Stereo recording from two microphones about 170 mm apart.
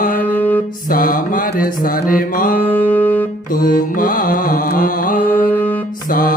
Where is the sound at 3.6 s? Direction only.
55° left (ahead or behind).